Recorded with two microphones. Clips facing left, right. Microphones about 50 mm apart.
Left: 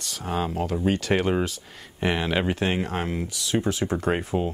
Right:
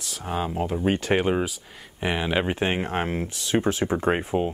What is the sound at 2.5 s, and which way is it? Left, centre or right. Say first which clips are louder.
Speech: even; right.